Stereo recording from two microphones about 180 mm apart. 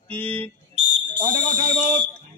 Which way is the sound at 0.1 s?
10° left (ahead or behind).